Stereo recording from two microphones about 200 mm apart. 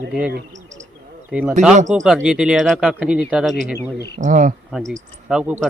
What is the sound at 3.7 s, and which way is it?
Speech, 55° left (ahead or behind).